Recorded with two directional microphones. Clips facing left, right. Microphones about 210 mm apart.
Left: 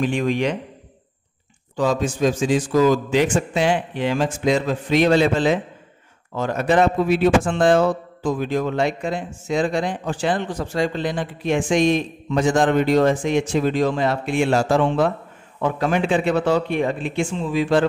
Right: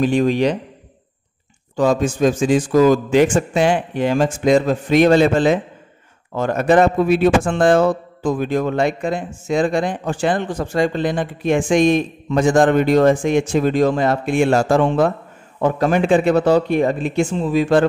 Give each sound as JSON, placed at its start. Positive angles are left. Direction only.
{"t": 0.0, "sound": "a man's voice", "side_deg": -35}
{"t": 1.8, "sound": "speech", "side_deg": -50}